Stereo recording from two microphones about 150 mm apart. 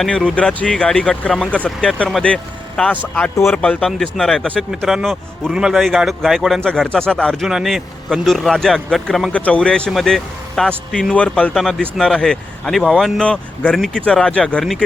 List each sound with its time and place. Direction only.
0.3 s speech: 5° left (ahead or behind)